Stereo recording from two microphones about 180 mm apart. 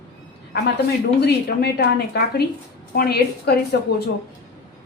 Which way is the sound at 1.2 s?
60° left (ahead or behind).